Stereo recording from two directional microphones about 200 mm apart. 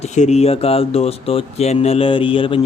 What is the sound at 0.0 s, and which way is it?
Speech, 35° left (ahead or behind).